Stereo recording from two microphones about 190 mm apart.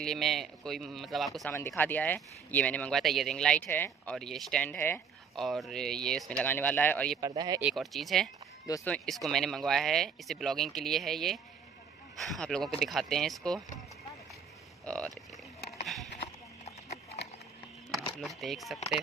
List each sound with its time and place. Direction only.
0.0 s speech: centre (ahead or behind)
1.5 s speech: 10° left (ahead or behind)
7.2 s speech: 20° right (ahead or behind)
7.6 s speech: centre (ahead or behind)
14.9 s speech: 5° left (ahead or behind)
16.6 s horse: 35° left (ahead or behind)
17.9 s speech: centre (ahead or behind)